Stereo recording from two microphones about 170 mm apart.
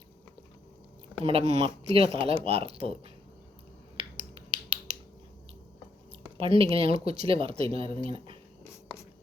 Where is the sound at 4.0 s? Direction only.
35° right (ahead or behind).